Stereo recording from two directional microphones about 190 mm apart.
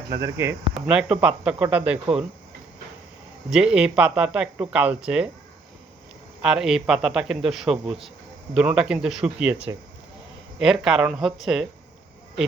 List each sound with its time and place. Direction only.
0.1 s speech: 15° right (ahead or behind)
3.5 s speech: 5° right (ahead or behind)
6.4 s speech: 5° right (ahead or behind)